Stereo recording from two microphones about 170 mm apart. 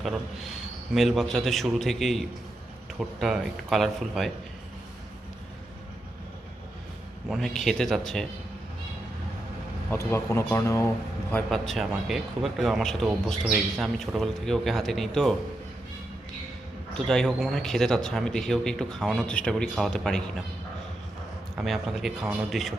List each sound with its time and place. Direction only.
0.0 s speech: centre (ahead or behind)
7.3 s speech: centre (ahead or behind)
9.9 s speech: 15° left (ahead or behind)
11.4 s speech: centre (ahead or behind)
16.9 s speech: 5° left (ahead or behind)
21.5 s speech: centre (ahead or behind)